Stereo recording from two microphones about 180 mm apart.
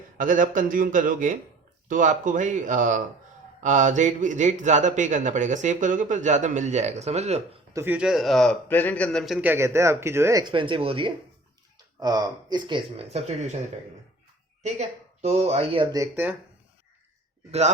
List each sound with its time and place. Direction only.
0.2 s speech: 45° right (ahead or behind)
7.7 s speech: 15° right (ahead or behind); by 13.6 s 40° right (ahead or behind)
14.6 s speech: 40° right (ahead or behind); by 16.3 s 15° right (ahead or behind)